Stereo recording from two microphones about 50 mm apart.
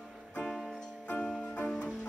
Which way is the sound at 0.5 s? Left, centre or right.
Centre.